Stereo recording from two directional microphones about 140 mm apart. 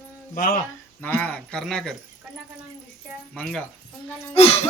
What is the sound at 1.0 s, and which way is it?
Speech, 10° left (ahead or behind).